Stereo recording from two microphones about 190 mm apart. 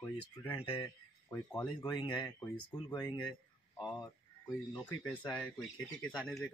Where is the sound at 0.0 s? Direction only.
10° left (ahead or behind).